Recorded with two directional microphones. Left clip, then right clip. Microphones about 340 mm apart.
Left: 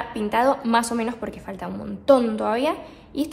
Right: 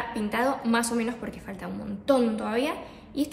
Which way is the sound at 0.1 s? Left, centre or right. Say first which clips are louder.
Left 8 dB; centre.